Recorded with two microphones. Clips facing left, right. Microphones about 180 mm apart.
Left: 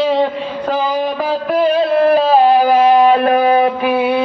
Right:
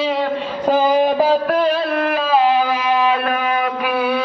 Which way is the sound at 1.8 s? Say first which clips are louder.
Left 7 dB; 30° left (ahead or behind).